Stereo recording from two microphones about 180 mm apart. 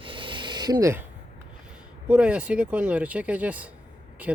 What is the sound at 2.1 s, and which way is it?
Speech, 5° right (ahead or behind).